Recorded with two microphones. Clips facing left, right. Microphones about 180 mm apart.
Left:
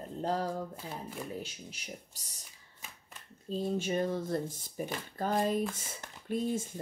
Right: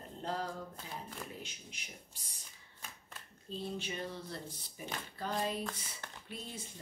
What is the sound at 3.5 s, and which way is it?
Speech, 45° left (ahead or behind).